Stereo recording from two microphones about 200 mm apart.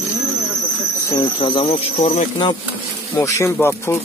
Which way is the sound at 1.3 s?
25° left (ahead or behind).